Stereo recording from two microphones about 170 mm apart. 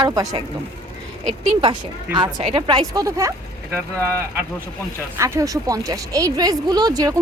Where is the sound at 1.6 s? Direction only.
25° right (ahead or behind).